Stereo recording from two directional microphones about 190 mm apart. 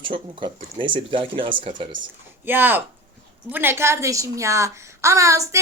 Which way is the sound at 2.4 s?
10° right (ahead or behind).